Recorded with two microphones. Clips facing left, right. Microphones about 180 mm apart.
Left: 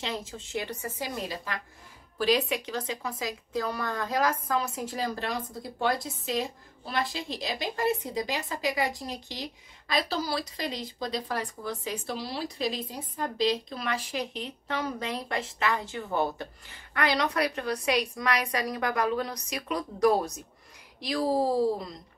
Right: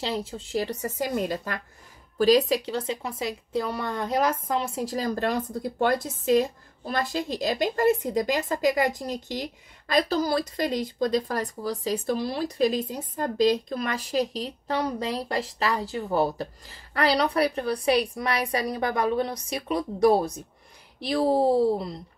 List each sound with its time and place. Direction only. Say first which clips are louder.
0.0 s a woman's voice: right 5 dB; 35° right (ahead or behind)